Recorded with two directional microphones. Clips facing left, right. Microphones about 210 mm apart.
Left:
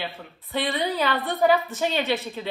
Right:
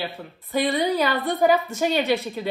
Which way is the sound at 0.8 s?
15° right (ahead or behind).